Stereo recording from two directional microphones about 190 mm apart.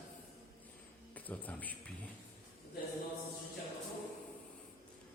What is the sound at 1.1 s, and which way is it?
Speech, 10° left (ahead or behind).